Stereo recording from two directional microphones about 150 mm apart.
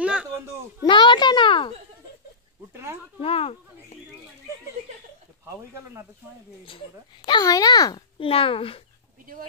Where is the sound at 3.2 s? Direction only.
40° left (ahead or behind).